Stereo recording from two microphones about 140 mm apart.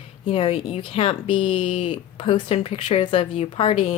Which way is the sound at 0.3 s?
40° left (ahead or behind).